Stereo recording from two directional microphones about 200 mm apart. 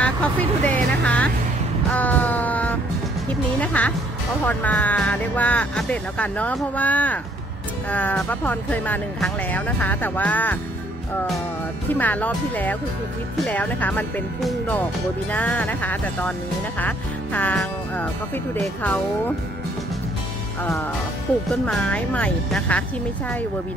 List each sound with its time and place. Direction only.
0.0 s vehicle: 5° left (ahead or behind)
2.0 s music: 10° left (ahead or behind)
3.6 s speech: 5° left (ahead or behind)
11.9 s speech: 10° left (ahead or behind)
21.5 s speech: centre (ahead or behind)